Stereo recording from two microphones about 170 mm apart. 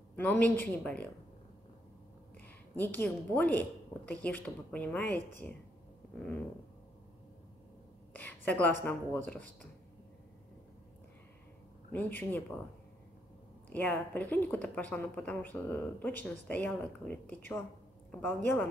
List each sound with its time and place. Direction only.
0.1 s a woman's voice: 10° left (ahead or behind)
2.4 s a woman's voice: 10° left (ahead or behind)
8.1 s speech: 10° left (ahead or behind)
11.9 s a woman's voice: 10° left (ahead or behind)
13.7 s a woman's voice: 10° left (ahead or behind)